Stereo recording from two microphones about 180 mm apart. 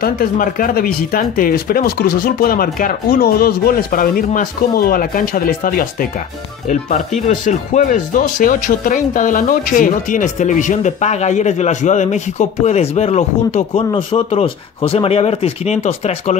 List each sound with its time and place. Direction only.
0.0 s speech: 55° left (ahead or behind); by 16.3 s 35° left (ahead or behind)